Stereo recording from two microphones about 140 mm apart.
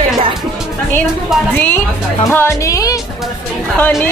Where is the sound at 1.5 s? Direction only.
15° left (ahead or behind).